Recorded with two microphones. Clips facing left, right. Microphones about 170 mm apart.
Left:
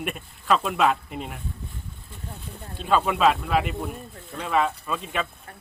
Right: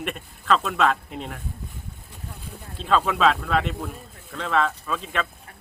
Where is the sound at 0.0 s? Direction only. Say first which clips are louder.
Even; 5° left (ahead or behind).